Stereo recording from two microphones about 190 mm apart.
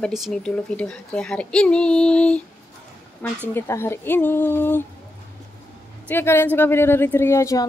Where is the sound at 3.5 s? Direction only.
10° left (ahead or behind).